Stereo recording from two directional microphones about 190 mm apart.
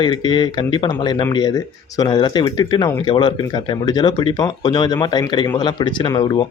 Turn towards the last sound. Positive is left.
turn(degrees=25)  # may be behind; listen again after turning